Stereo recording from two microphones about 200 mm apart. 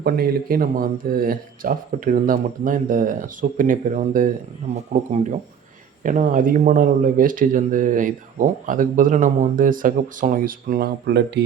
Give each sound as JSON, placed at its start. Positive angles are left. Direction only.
{"t": 0.0, "sound": "speech", "side_deg": -50}